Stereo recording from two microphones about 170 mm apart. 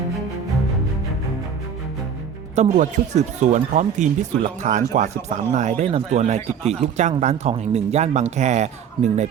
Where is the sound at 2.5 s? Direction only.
45° right (ahead or behind).